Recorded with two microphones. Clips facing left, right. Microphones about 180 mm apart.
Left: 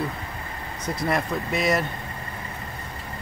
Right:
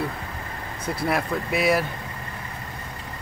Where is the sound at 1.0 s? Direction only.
5° right (ahead or behind).